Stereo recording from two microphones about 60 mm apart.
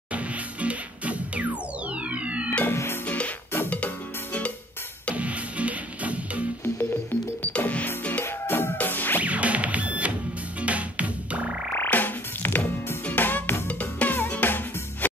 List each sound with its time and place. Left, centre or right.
0.1 s music: right
2.6 s music: left
3.7 s music: left
5.1 s music: right
6.8 s music: left
9.2 s music: right
10.6 s frog: right
11.7 s frog: left
13.7 s music: left